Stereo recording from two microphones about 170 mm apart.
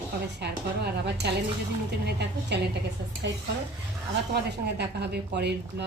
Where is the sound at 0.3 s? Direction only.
75° right (ahead or behind).